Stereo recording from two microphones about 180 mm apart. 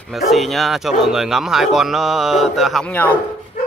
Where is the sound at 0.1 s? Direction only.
Centre (ahead or behind).